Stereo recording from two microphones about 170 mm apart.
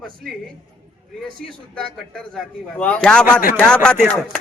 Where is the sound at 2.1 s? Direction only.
5° left (ahead or behind).